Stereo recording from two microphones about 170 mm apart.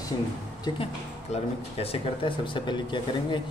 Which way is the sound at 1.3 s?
40° left (ahead or behind).